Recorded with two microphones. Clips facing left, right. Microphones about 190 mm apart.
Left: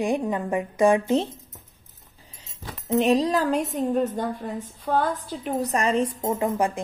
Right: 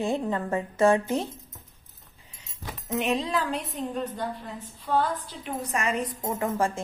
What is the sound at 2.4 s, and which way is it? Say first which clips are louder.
Speech: even; 35° left (ahead or behind).